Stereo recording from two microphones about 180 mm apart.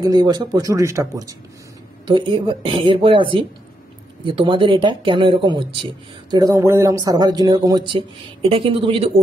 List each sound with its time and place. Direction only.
0.0 s speech: 25° right (ahead or behind)